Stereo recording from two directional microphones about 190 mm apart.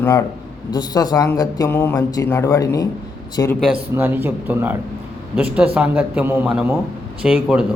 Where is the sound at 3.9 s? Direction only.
10° right (ahead or behind).